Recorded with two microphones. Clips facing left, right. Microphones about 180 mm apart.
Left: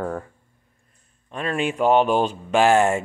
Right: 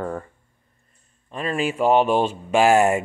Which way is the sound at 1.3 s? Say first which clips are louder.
Even; centre (ahead or behind).